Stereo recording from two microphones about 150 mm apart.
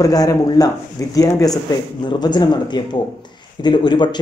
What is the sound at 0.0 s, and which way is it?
A man's voice, 25° left (ahead or behind).